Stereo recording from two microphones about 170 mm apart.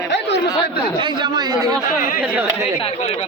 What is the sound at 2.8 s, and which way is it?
Speech, 35° left (ahead or behind).